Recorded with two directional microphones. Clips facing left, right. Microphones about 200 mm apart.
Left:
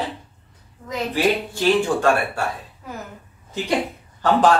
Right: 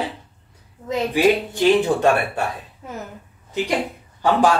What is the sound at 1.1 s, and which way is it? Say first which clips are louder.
Speech: right 3 dB; 20° right (ahead or behind).